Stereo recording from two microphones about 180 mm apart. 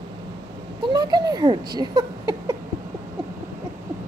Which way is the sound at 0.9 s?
20° right (ahead or behind).